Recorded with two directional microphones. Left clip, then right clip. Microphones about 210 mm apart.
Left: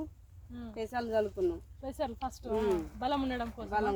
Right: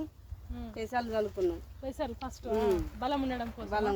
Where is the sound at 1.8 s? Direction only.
30° left (ahead or behind).